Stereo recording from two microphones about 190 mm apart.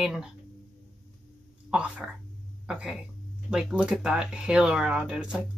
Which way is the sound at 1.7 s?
5° right (ahead or behind).